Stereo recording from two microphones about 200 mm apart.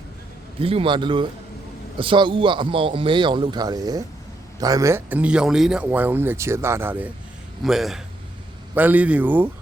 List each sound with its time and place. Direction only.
0.6 s a man's voice: 25° right (ahead or behind); by 9.5 s 10° right (ahead or behind)